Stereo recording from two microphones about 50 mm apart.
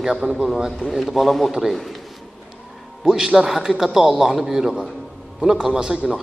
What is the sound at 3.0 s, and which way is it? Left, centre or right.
A man's voice, centre.